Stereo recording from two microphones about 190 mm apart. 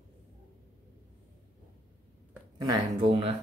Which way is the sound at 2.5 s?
20° right (ahead or behind).